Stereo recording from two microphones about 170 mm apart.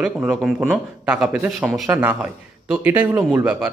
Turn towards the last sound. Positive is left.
turn(degrees=-5)  # may be behind; listen again after turning